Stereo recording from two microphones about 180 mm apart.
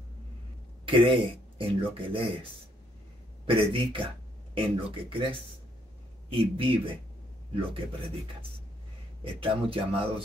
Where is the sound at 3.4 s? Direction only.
30° right (ahead or behind).